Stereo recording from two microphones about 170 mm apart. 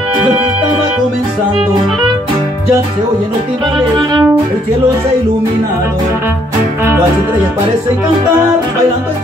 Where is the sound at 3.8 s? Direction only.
25° right (ahead or behind).